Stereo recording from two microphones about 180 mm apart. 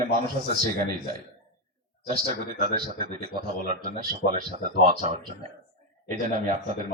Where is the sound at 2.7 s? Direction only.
50° right (ahead or behind).